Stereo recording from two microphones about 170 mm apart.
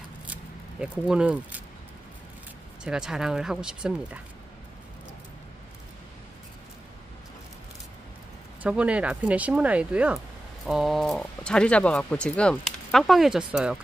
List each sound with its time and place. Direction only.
0.3 s a sound: 5° right (ahead or behind)
2.8 s speech: 5° right (ahead or behind)
8.6 s speech: 10° right (ahead or behind)